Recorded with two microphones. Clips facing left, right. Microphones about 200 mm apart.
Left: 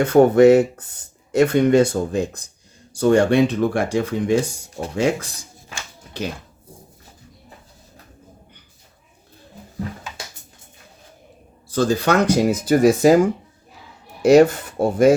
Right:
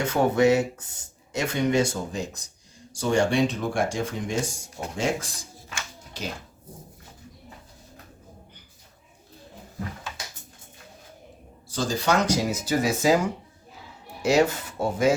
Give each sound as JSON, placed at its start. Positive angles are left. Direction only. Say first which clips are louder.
{"t": 0.0, "sound": "speech", "louder": "left 9 dB", "side_deg": 55}
{"t": 11.7, "sound": "speech", "louder": "left 6 dB", "side_deg": 60}
{"t": 14.2, "sound": "rub", "louder": "left 9 dB", "side_deg": 55}